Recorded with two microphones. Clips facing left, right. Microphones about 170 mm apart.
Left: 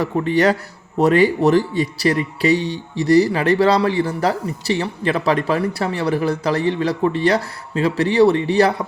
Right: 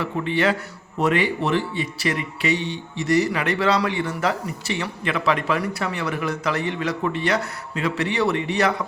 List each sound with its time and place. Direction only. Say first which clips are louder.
0.0 s speech: left 5 dB; 40° left (ahead or behind)